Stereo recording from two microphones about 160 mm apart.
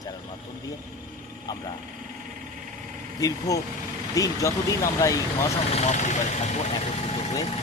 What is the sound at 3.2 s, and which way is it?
Speech, 20° left (ahead or behind).